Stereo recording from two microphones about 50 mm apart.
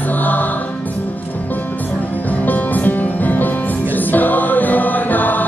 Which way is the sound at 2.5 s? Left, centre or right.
Left.